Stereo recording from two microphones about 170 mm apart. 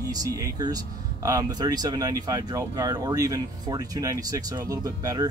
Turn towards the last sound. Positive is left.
turn(degrees=-20)  # may be behind; listen again after turning